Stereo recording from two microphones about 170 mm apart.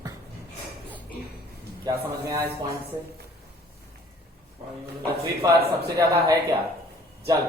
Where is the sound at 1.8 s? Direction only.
20° right (ahead or behind).